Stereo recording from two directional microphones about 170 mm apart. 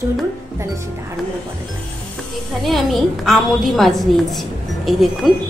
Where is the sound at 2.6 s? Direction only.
Centre (ahead or behind).